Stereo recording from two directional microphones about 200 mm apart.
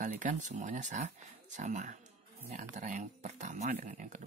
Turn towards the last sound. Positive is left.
turn(degrees=-40)  # may be behind; listen again after turning